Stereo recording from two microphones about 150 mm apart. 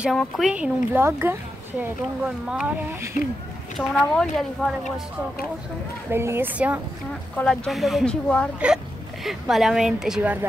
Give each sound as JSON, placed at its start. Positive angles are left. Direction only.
{"t": 0.0, "sound": "speech", "side_deg": 0}
{"t": 3.7, "sound": "a woman's voice", "side_deg": 5}
{"t": 6.0, "sound": "speech", "side_deg": -15}
{"t": 7.3, "sound": "a woman's voice", "side_deg": 5}